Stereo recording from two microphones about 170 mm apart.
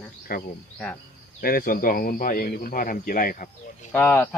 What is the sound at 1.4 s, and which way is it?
Speech, 60° left (ahead or behind).